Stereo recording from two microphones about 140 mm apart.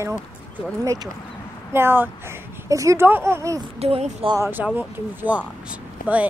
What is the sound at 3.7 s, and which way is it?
Speech, 50° right (ahead or behind).